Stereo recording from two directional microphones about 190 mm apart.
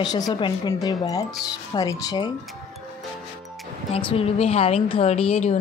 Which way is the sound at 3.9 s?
30° left (ahead or behind).